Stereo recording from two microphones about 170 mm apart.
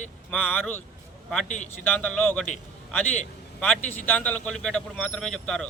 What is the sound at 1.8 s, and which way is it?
Speech, 10° left (ahead or behind).